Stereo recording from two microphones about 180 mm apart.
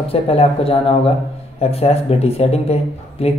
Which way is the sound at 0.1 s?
35° left (ahead or behind).